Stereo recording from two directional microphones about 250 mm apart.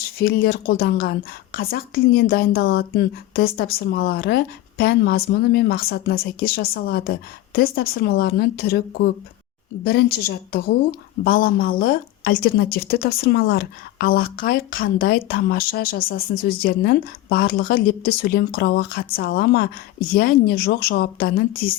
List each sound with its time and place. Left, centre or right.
0.2 s a woman's voice: left